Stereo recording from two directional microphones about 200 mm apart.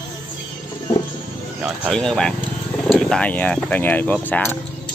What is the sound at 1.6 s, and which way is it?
Speech, 5° left (ahead or behind).